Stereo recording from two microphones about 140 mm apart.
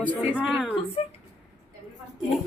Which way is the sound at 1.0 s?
40° left (ahead or behind).